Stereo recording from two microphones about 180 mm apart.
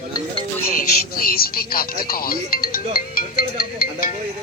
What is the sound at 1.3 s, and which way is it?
Speech, 55° left (ahead or behind).